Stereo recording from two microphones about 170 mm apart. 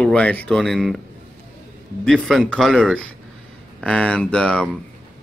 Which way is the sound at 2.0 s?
5° left (ahead or behind).